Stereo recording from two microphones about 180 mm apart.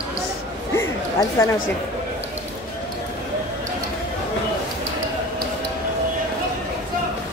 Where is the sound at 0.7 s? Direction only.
15° left (ahead or behind).